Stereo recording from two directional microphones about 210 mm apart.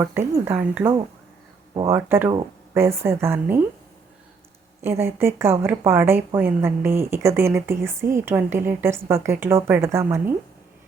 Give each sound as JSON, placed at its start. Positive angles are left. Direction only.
{"t": 0.0, "sound": "speech", "side_deg": -10}
{"t": 1.7, "sound": "speech", "side_deg": -20}
{"t": 2.0, "sound": "speech", "side_deg": -10}
{"t": 4.8, "sound": "speech", "side_deg": -10}